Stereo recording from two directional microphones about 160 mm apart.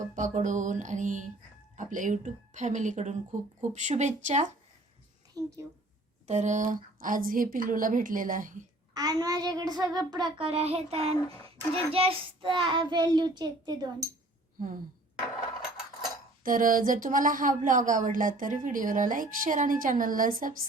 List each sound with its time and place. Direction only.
0.2 s speech: 50° right (ahead or behind)
5.4 s a sound: 20° right (ahead or behind)
6.2 s a woman's voice: 45° right (ahead or behind)
9.0 s child singing: 25° right (ahead or behind)
10.3 s child singing: 35° right (ahead or behind)
16.4 s a woman's voice: 55° right (ahead or behind)